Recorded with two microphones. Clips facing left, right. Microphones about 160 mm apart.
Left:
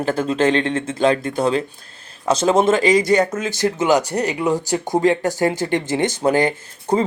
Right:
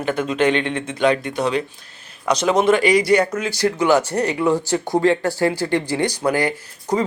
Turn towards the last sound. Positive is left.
turn(degrees=25)  # may be behind; listen again after turning